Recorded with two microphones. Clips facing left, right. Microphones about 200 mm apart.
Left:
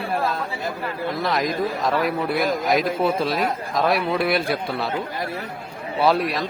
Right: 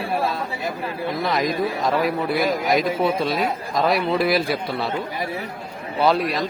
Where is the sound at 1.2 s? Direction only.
Centre (ahead or behind).